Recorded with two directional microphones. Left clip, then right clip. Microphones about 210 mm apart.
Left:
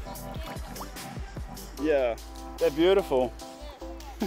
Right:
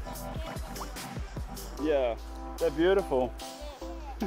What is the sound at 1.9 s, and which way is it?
Music, 40° left (ahead or behind).